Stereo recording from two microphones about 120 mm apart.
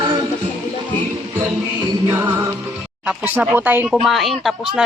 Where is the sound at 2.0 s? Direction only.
20° right (ahead or behind).